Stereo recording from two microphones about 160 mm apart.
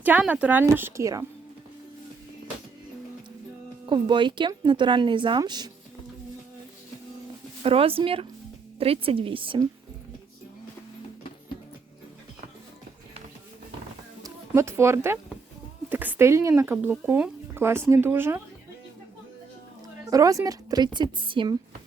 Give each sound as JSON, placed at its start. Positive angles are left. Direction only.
{"t": 0.0, "sound": "speech", "side_deg": -10}
{"t": 3.8, "sound": "speech", "side_deg": -30}
{"t": 7.6, "sound": "a woman's voice", "side_deg": -35}
{"t": 14.2, "sound": "speech", "side_deg": -20}
{"t": 20.1, "sound": "speech", "side_deg": -20}